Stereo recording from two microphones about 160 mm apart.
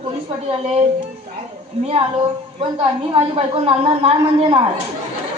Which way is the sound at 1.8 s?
35° right (ahead or behind).